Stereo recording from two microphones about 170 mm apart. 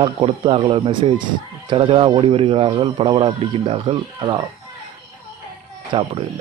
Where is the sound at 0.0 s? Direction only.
35° right (ahead or behind).